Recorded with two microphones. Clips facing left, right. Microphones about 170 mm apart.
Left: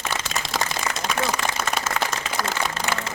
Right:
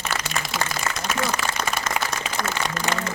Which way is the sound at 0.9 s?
65° left (ahead or behind).